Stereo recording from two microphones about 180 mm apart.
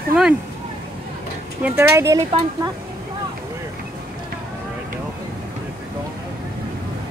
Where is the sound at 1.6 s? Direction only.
15° right (ahead or behind).